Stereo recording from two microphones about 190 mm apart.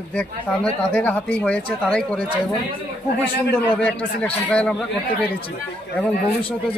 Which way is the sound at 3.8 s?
5° left (ahead or behind).